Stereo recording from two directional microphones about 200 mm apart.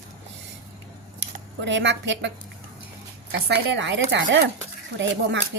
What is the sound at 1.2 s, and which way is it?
Speech, 60° right (ahead or behind).